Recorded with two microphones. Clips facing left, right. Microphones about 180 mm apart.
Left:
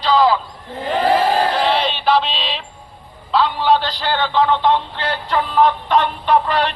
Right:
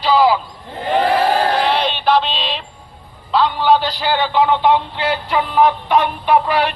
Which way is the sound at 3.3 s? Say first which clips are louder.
Right 1 dB; centre (ahead or behind).